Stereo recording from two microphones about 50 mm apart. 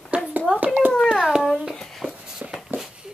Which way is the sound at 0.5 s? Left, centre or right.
Right.